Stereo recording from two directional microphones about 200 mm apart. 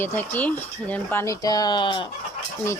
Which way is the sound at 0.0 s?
10° left (ahead or behind).